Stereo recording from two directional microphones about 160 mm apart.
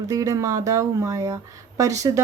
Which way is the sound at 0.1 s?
20° right (ahead or behind).